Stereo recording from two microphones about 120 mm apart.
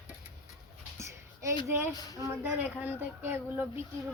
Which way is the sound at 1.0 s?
25° right (ahead or behind).